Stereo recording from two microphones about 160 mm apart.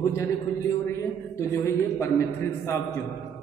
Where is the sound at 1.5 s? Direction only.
15° left (ahead or behind).